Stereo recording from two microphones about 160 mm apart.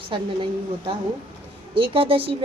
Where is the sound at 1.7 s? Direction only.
35° right (ahead or behind).